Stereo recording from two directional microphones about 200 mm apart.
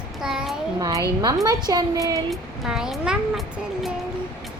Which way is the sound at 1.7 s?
20° right (ahead or behind).